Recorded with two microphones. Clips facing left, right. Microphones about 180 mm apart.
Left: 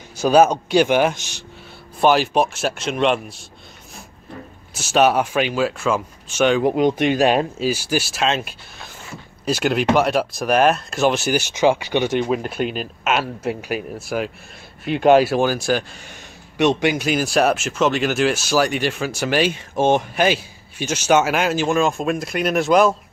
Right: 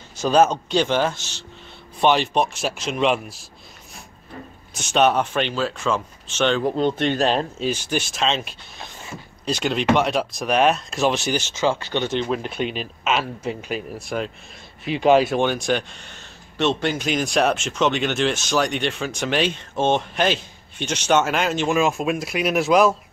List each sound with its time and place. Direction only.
0.2 s speech: 10° left (ahead or behind)
2.0 s speech: 5° left (ahead or behind)
4.7 s speech: 5° left (ahead or behind)